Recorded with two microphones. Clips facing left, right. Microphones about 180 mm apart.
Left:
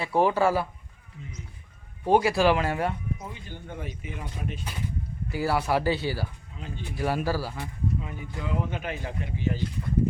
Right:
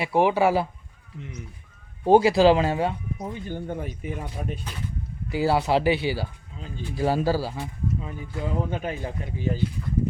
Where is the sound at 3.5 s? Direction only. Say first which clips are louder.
Right 7 dB; 45° right (ahead or behind).